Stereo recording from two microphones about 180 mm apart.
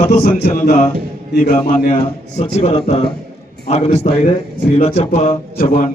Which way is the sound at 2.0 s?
35° left (ahead or behind).